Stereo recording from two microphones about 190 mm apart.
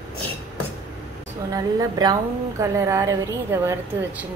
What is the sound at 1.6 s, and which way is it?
A woman's voice, 20° right (ahead or behind).